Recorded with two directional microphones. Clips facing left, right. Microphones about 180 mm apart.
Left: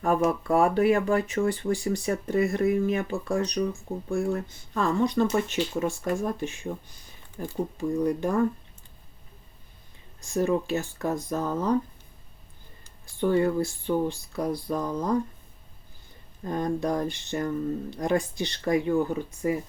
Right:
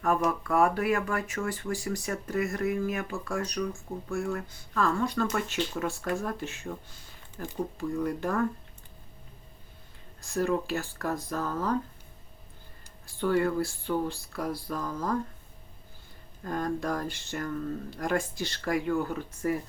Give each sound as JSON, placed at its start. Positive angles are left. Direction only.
{"t": 0.3, "sound": "speech", "side_deg": 30}
{"t": 10.2, "sound": "speech", "side_deg": 20}
{"t": 13.1, "sound": "speech", "side_deg": 20}
{"t": 16.4, "sound": "speech", "side_deg": 20}